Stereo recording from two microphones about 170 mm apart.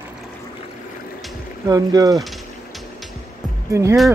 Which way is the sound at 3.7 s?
15° right (ahead or behind).